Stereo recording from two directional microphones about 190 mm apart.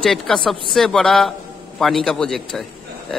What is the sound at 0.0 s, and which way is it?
A man's voice, centre (ahead or behind).